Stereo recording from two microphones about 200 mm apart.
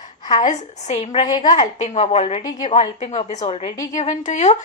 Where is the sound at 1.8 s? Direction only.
35° left (ahead or behind).